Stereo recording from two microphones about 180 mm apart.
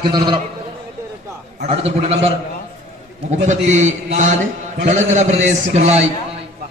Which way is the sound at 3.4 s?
40° right (ahead or behind).